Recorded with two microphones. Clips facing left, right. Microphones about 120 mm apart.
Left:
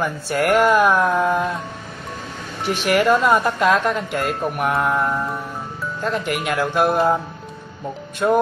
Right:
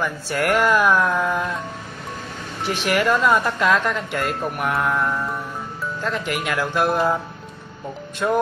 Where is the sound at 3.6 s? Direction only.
35° left (ahead or behind).